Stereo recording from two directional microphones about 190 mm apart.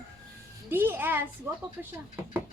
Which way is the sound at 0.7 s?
10° right (ahead or behind).